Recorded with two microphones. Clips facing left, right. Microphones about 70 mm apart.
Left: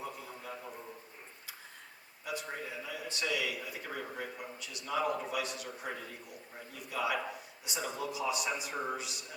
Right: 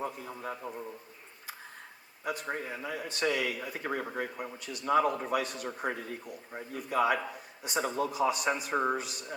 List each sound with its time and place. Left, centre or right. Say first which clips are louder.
0.0 s a man's voice: right 6 dB; right
2.2 s speech: right 5 dB; right